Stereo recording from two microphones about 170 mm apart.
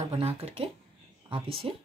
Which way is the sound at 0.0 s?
35° right (ahead or behind).